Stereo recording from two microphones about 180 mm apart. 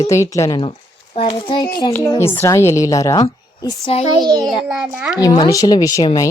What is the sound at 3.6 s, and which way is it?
Speech, 30° left (ahead or behind).